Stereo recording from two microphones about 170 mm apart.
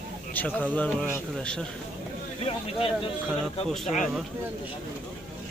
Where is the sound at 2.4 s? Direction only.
35° left (ahead or behind).